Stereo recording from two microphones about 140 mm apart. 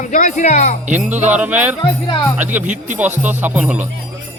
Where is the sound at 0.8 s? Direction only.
10° right (ahead or behind).